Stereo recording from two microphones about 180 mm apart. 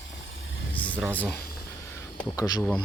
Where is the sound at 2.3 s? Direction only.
20° left (ahead or behind).